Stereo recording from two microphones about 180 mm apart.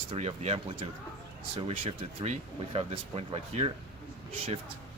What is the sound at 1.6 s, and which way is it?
Speech, 30° right (ahead or behind).